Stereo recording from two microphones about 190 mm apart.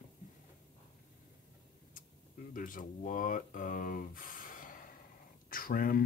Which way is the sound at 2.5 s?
45° left (ahead or behind).